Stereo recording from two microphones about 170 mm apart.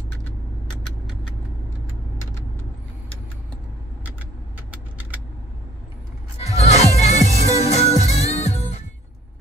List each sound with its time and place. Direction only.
6.4 s music: 40° left (ahead or behind)